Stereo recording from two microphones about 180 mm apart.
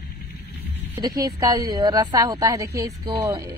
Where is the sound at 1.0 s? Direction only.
20° right (ahead or behind).